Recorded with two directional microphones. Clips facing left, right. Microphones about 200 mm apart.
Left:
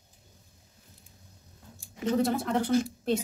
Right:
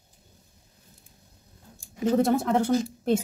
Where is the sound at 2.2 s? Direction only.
45° right (ahead or behind).